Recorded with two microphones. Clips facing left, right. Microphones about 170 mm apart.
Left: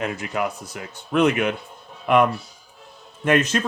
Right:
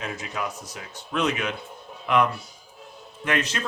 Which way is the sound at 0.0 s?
60° left (ahead or behind).